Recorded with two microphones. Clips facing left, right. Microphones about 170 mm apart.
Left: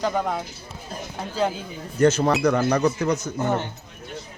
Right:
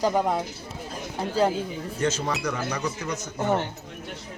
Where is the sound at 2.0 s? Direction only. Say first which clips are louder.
Left 9 dB; 60° left (ahead or behind).